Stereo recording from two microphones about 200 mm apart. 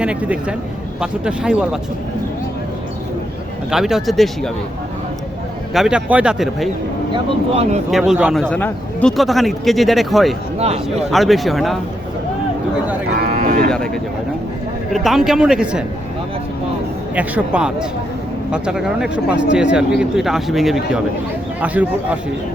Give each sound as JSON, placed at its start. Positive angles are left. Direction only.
{"t": 0.0, "sound": "a man's voice", "side_deg": -5}
{"t": 3.7, "sound": "a man's voice", "side_deg": 0}
{"t": 5.7, "sound": "a man's voice", "side_deg": -5}
{"t": 7.5, "sound": "speech", "side_deg": -30}
{"t": 7.9, "sound": "a man's voice", "side_deg": 0}
{"t": 13.1, "sound": "cattle", "side_deg": -45}
{"t": 13.7, "sound": "a man's voice", "side_deg": 5}
{"t": 17.2, "sound": "a man's voice", "side_deg": -5}